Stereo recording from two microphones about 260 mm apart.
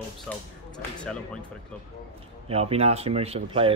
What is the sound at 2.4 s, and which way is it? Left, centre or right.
Speech, right.